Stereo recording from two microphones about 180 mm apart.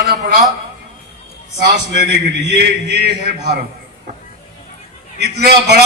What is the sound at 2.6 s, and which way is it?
Speech, 65° right (ahead or behind).